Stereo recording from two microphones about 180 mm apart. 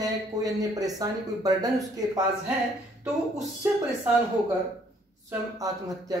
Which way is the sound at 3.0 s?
5° right (ahead or behind).